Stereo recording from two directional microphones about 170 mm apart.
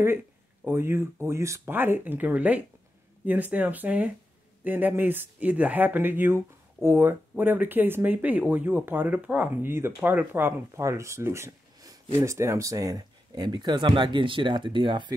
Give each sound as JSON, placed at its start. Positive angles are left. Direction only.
{"t": 0.7, "sound": "speech", "side_deg": -15}